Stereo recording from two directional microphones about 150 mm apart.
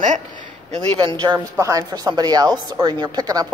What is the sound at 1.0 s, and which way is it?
Speech, 30° right (ahead or behind).